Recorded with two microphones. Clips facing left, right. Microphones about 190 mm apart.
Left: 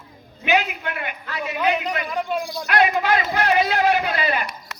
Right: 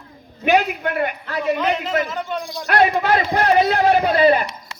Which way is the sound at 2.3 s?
Centre (ahead or behind).